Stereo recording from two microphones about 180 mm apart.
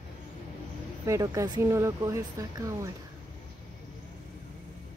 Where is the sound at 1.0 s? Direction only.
15° right (ahead or behind).